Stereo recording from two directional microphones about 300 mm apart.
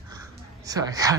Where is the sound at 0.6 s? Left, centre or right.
Centre.